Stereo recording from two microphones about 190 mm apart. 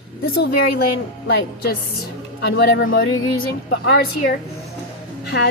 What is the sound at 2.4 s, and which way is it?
Speech, 70° left (ahead or behind).